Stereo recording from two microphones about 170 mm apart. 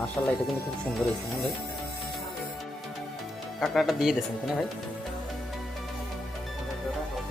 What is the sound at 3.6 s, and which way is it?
Speech, centre (ahead or behind).